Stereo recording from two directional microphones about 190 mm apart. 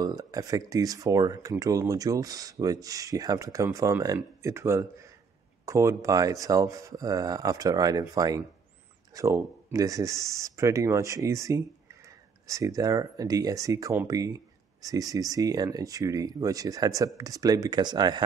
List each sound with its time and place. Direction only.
0.0 s speech: 20° right (ahead or behind)